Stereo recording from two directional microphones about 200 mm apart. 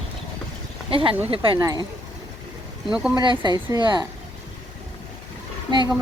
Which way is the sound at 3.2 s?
20° right (ahead or behind).